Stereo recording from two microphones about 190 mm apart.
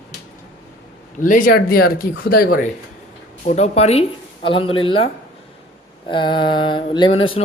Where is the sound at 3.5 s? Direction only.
35° left (ahead or behind).